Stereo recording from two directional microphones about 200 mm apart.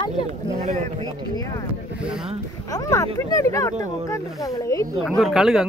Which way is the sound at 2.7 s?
15° left (ahead or behind).